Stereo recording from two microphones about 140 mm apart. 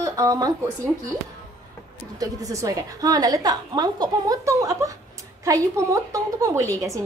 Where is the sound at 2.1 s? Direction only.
25° right (ahead or behind).